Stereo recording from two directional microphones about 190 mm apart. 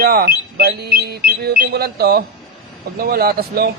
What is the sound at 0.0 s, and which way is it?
A man's voice, 55° right (ahead or behind).